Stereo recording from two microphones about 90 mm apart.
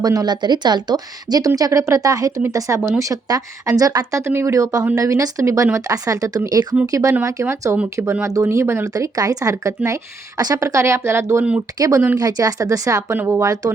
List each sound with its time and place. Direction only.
0.0 s speech: 45° right (ahead or behind)
8.9 s speech: 40° right (ahead or behind)
11.8 s speech: 45° right (ahead or behind)
13.1 s speech: 25° right (ahead or behind)
13.4 s speech: 40° right (ahead or behind)